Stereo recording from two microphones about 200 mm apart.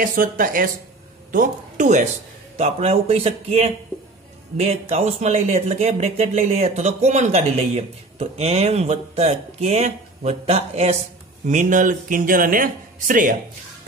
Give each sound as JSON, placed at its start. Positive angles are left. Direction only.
{"t": 0.0, "sound": "a woman's voice", "side_deg": -45}